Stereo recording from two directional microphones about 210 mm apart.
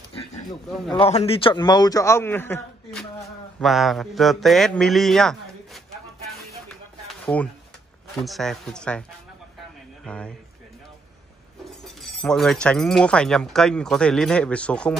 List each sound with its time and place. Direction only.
0.1 s a sound: 25° left (ahead or behind)
0.7 s speech: centre (ahead or behind)
0.9 s a man's voice: 30° left (ahead or behind); by 5.8 s centre (ahead or behind)
7.3 s a man's voice: 10° left (ahead or behind)
10.0 s speech: 5° left (ahead or behind)
11.8 s speech: centre (ahead or behind)